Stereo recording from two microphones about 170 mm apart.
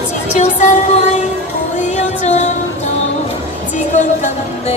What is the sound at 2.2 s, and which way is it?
Music, 40° left (ahead or behind).